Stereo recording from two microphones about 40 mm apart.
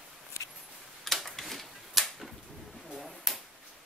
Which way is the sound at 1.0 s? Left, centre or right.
Centre.